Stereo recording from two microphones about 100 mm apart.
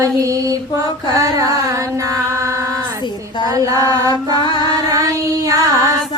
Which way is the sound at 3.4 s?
35° right (ahead or behind).